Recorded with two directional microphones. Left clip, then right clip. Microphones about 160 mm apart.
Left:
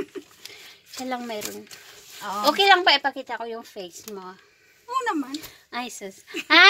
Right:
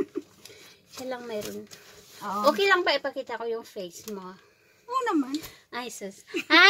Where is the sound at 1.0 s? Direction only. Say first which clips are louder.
Left 3 dB; 30° left (ahead or behind).